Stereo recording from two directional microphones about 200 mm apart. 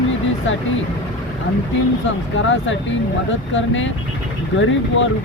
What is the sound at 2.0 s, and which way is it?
Speech, 70° left (ahead or behind).